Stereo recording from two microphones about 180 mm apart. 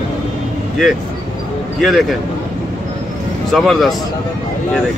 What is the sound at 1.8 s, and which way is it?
Speech, centre (ahead or behind).